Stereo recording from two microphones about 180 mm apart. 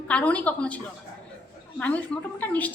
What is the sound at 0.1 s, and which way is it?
Speech, 5° left (ahead or behind).